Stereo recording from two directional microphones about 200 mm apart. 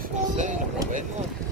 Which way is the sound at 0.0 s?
40° right (ahead or behind).